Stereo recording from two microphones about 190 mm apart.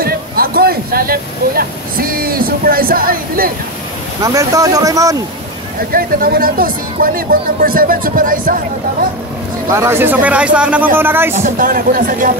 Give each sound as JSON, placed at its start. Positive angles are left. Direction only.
{"t": 0.0, "sound": "speech", "side_deg": -50}
{"t": 4.2, "sound": "speech", "side_deg": -20}
{"t": 5.9, "sound": "speech", "side_deg": -50}
{"t": 9.7, "sound": "speech", "side_deg": -15}
{"t": 11.4, "sound": "speech", "side_deg": -45}